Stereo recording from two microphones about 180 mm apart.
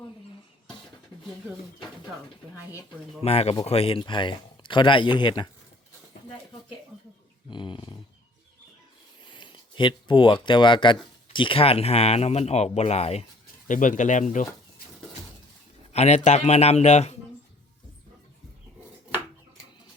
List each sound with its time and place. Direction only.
3.2 s speech: 35° left (ahead or behind)
7.5 s speech: 25° left (ahead or behind)
9.3 s speech: 25° left (ahead or behind); by 14.4 s 45° left (ahead or behind)
15.9 s speech: 40° left (ahead or behind)